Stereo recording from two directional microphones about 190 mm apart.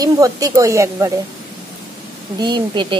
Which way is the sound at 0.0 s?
20° right (ahead or behind).